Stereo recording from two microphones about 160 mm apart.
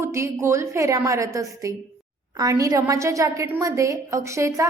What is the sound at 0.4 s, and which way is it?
A woman's voice, 15° right (ahead or behind).